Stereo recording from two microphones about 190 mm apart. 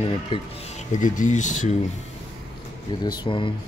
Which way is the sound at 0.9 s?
40° left (ahead or behind).